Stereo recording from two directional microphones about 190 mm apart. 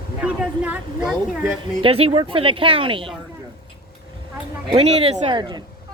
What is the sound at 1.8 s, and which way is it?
Speech, 30° right (ahead or behind).